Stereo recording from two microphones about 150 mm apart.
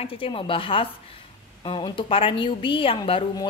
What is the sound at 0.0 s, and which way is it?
A woman's voice, 35° left (ahead or behind).